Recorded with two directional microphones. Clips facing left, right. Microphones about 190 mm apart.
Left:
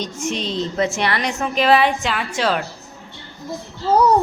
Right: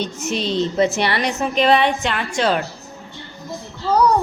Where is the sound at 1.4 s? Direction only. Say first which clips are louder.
Even; 5° left (ahead or behind).